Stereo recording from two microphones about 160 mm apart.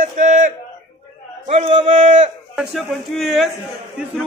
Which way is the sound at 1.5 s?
40° right (ahead or behind).